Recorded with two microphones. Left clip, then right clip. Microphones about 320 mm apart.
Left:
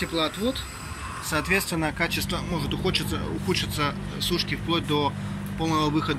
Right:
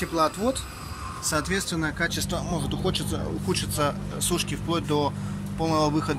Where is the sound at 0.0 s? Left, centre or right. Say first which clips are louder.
Right 2 dB; centre.